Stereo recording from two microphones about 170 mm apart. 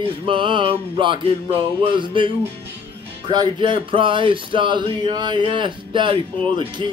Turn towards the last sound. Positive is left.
turn(degrees=-30)  # may be behind; listen again after turning